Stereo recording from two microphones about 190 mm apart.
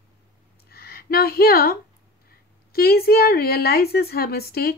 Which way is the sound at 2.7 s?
55° left (ahead or behind).